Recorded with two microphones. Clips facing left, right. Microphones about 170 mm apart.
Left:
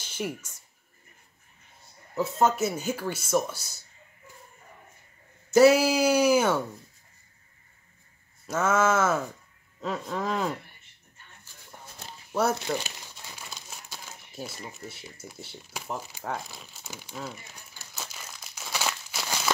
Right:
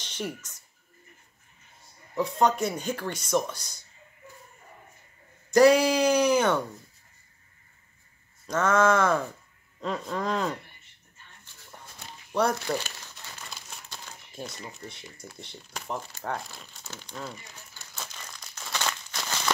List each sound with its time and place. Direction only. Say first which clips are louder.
0.0 s a sound: left 2 dB; 5° left (ahead or behind)
2.1 s speech: even; 5° left (ahead or behind)
5.5 s speech: even; 5° left (ahead or behind)
8.5 s speech: right 2 dB; 5° left (ahead or behind)
12.3 s speech: even; 5° left (ahead or behind)
13.5 s speech: even; 5° left (ahead or behind)
17.6 s crumpling: even; 10° left (ahead or behind)